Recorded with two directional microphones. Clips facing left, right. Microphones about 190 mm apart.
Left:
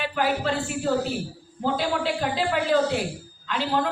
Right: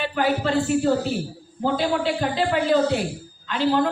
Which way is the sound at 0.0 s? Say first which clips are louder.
Right 2 dB; centre (ahead or behind).